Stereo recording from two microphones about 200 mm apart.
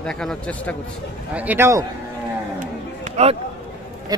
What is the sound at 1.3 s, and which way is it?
Speech, 10° right (ahead or behind).